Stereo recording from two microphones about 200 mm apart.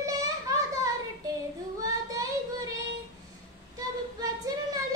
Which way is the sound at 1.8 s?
20° right (ahead or behind).